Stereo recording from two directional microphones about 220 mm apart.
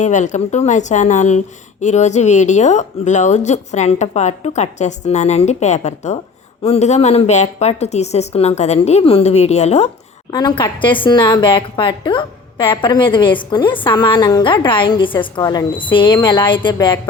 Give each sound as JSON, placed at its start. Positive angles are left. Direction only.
{"t": 0.0, "sound": "a woman's voice", "side_deg": 35}